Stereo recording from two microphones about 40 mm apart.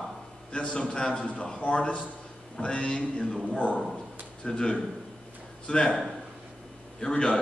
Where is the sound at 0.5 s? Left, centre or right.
Left.